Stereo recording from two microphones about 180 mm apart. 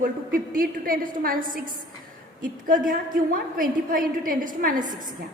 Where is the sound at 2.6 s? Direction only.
50° right (ahead or behind).